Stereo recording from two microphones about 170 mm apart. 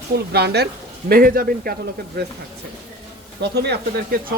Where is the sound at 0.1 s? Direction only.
70° right (ahead or behind).